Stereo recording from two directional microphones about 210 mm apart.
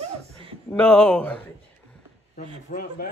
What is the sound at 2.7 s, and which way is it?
Speech, 45° left (ahead or behind).